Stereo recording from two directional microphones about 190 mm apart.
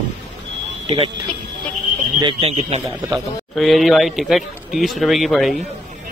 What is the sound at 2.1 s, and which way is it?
Speech, 25° right (ahead or behind).